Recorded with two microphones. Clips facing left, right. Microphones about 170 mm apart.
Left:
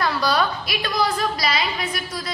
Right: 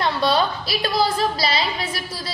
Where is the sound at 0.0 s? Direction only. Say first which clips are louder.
Right 1 dB; 25° right (ahead or behind).